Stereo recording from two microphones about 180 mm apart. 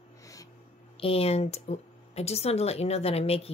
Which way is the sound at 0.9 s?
30° left (ahead or behind).